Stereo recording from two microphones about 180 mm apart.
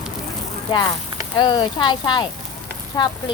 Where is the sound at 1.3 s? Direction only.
25° left (ahead or behind).